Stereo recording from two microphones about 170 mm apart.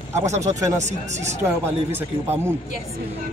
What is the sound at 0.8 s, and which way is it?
Speech, 40° right (ahead or behind).